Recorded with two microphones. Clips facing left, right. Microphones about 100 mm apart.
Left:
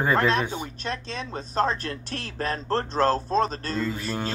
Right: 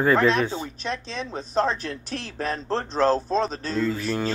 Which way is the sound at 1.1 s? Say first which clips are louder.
Right 1 dB; centre (ahead or behind).